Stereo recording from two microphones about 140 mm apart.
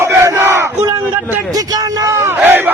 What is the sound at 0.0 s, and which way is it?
Battle cry, 20° right (ahead or behind).